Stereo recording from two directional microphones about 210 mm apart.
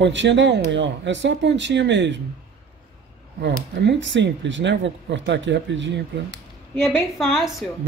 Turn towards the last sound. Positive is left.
turn(degrees=0)  # may be behind; listen again after turning